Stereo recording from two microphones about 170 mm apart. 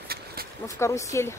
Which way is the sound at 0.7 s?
15° left (ahead or behind).